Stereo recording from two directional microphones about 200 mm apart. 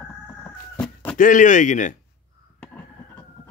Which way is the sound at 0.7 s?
5° left (ahead or behind).